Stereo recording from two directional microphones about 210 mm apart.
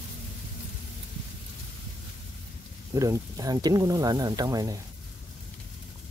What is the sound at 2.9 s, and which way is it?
Speech, 15° right (ahead or behind).